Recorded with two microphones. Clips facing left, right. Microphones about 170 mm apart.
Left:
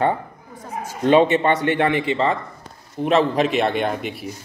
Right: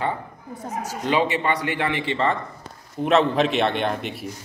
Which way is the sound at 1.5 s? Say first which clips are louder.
Left 5 dB; 25° left (ahead or behind).